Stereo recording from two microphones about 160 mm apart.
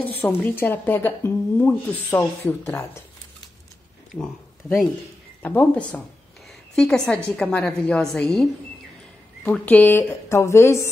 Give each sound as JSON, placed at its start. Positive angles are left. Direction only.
{"t": 0.2, "sound": "speech", "side_deg": 15}
{"t": 5.4, "sound": "a woman's voice", "side_deg": 10}